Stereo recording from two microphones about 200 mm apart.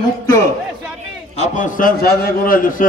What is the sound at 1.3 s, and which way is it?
A man's voice, 35° left (ahead or behind).